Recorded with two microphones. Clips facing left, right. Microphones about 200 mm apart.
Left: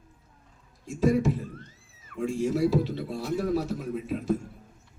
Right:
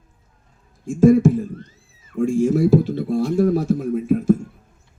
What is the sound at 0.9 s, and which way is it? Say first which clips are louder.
Speech: right 10 dB; 50° right (ahead or behind).